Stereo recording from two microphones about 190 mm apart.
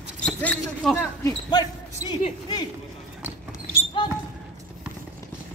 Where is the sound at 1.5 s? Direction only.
20° left (ahead or behind).